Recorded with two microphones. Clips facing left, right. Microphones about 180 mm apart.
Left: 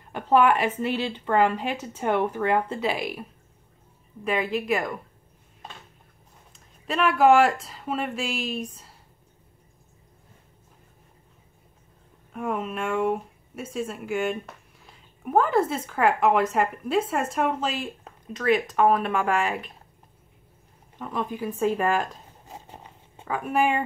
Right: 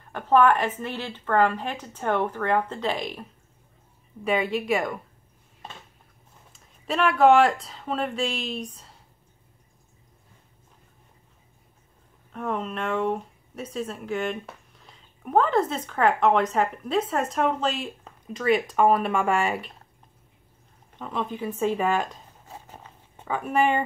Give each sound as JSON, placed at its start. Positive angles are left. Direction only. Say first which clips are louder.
{"t": 0.1, "sound": "speech", "louder": "even", "side_deg": 10}
{"t": 6.9, "sound": "speech", "louder": "even", "side_deg": 0}
{"t": 12.3, "sound": "speech", "louder": "left 1 dB", "side_deg": 5}
{"t": 20.9, "sound": "speech", "louder": "even", "side_deg": 5}
{"t": 22.5, "sound": "a sound", "louder": "left 1 dB", "side_deg": 20}
{"t": 23.2, "sound": "speech", "louder": "right 1 dB", "side_deg": 0}